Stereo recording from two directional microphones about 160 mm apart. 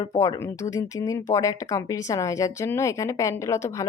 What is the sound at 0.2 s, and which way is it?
Speech, 20° left (ahead or behind).